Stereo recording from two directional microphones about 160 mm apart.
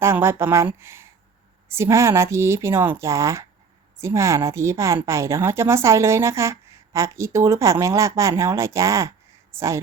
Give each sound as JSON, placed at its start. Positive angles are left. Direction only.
{"t": 0.0, "sound": "a woman's voice", "side_deg": -15}